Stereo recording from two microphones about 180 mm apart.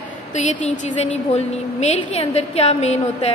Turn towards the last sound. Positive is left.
turn(degrees=35)  # may be behind; listen again after turning